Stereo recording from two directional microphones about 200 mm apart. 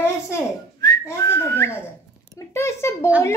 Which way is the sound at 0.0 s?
15° left (ahead or behind).